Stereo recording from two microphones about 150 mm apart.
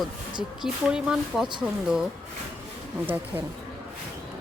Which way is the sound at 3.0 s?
15° right (ahead or behind).